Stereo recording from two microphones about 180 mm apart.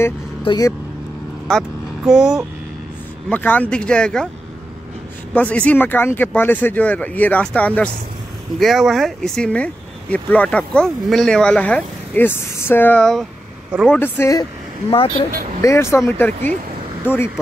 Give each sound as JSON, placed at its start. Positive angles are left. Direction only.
{"t": 0.5, "sound": "speech", "side_deg": 20}
{"t": 1.5, "sound": "speech", "side_deg": 0}
{"t": 3.3, "sound": "speech", "side_deg": 10}
{"t": 5.3, "sound": "speech", "side_deg": 10}
{"t": 13.8, "sound": "speech", "side_deg": 10}
{"t": 15.6, "sound": "speech", "side_deg": 15}